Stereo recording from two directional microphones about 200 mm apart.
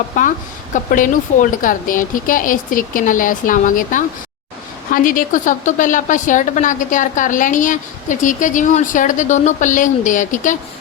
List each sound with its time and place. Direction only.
0.2 s a woman's voice: 40° left (ahead or behind)